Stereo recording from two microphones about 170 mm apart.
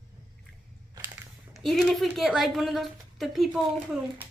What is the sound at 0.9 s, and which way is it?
Crushing, 15° right (ahead or behind).